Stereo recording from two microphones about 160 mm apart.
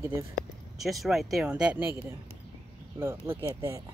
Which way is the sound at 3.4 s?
15° right (ahead or behind).